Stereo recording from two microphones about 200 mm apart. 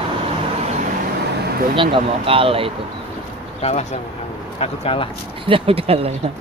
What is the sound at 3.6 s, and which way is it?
Speech, 35° left (ahead or behind).